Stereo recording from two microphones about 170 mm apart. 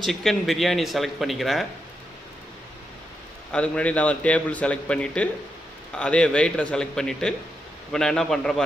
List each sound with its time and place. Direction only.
0.0 s speech: centre (ahead or behind)
3.5 s a man's voice: 5° left (ahead or behind)